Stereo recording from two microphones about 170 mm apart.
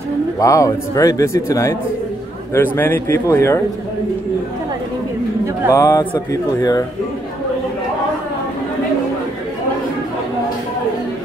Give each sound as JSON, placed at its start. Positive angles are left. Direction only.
{"t": 0.4, "sound": "a man's voice", "side_deg": 20}
{"t": 5.7, "sound": "a man's voice", "side_deg": 15}